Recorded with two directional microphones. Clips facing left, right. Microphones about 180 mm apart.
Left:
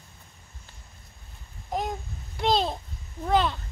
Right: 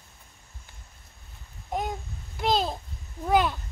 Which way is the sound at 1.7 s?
Centre (ahead or behind).